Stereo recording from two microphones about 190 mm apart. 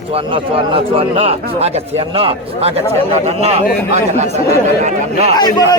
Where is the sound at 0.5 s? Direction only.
30° right (ahead or behind).